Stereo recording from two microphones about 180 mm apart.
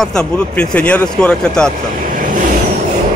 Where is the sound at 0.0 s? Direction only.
5° left (ahead or behind).